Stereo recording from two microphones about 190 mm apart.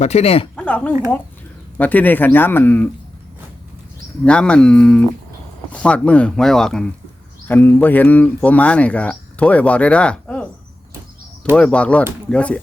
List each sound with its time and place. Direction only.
0.0 s speech: 35° left (ahead or behind)
0.5 s a woman's voice: 5° left (ahead or behind)
4.3 s speech: 5° left (ahead or behind)
11.5 s speech: 5° left (ahead or behind)